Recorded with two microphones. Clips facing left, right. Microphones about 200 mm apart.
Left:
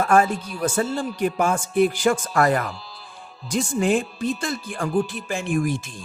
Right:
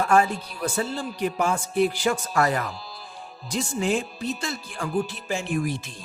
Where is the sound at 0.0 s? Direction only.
50° left (ahead or behind).